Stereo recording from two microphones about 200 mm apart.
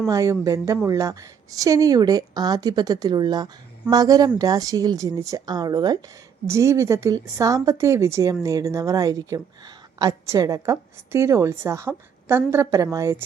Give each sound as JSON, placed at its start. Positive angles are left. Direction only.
{"t": 0.1, "sound": "speech", "side_deg": -15}